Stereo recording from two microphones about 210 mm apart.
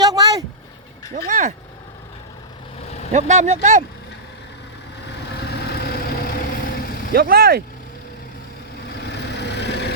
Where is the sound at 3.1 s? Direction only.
35° right (ahead or behind).